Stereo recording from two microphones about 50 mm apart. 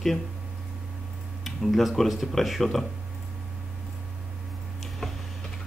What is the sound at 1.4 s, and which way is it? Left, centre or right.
Speech, centre.